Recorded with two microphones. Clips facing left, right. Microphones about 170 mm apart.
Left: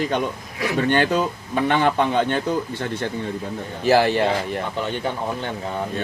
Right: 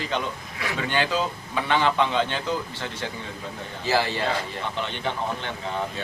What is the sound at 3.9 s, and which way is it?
Speech, 60° left (ahead or behind).